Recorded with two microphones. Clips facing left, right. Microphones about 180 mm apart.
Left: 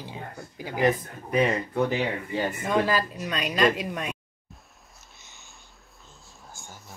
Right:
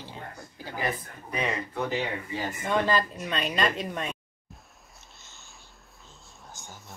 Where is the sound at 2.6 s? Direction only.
10° left (ahead or behind).